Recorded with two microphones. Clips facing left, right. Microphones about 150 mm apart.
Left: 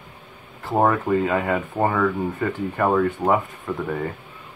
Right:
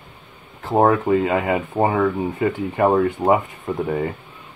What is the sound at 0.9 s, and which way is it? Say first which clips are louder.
Speech: right 3 dB; 10° right (ahead or behind).